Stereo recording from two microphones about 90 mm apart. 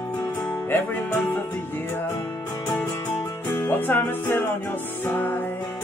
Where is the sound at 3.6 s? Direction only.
20° left (ahead or behind).